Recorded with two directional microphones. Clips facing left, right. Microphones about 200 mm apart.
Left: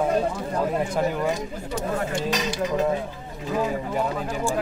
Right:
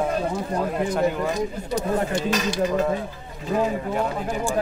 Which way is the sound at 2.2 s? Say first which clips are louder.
Right 3 dB; 20° left (ahead or behind).